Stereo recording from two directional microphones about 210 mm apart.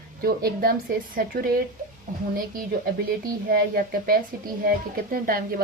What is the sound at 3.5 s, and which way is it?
A woman's voice, 45° right (ahead or behind).